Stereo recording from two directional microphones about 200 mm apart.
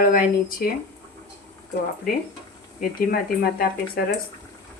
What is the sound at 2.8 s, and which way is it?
Speech, 50° left (ahead or behind).